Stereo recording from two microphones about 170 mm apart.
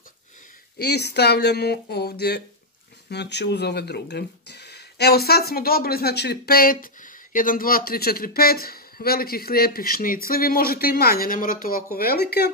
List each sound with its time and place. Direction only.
0.7 s speech: 75° left (ahead or behind)
3.1 s speech: 90° left; by 12.4 s 70° left (ahead or behind)